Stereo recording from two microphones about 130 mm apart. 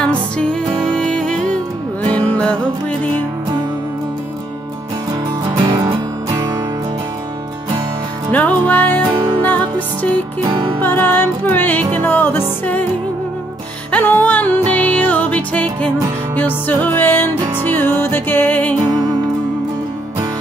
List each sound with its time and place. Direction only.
0.0 s music: 10° left (ahead or behind)
5.6 s music: 35° right (ahead or behind)
8.3 s music: 10° left (ahead or behind)
10.4 s music: 35° right (ahead or behind)
10.8 s music: 15° left (ahead or behind)
13.9 s music: 15° left (ahead or behind)